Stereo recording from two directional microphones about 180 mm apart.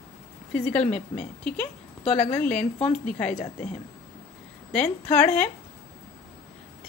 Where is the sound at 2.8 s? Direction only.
40° left (ahead or behind).